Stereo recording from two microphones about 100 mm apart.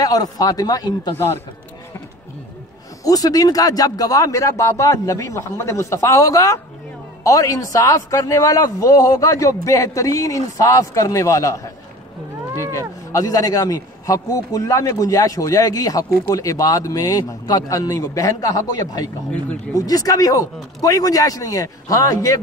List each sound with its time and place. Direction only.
0.0 s a man's voice: 40° left (ahead or behind)
1.1 s speech: 25° left (ahead or behind)
3.0 s a man's voice: 40° left (ahead or behind)
12.7 s a man's voice: 35° left (ahead or behind)